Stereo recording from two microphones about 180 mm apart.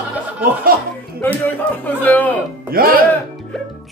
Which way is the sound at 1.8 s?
10° left (ahead or behind).